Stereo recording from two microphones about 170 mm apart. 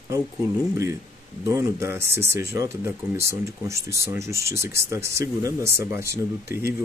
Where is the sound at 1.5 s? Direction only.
15° right (ahead or behind).